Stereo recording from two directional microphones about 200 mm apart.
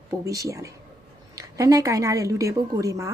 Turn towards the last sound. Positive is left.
turn(degrees=-15)  # may be behind; listen again after turning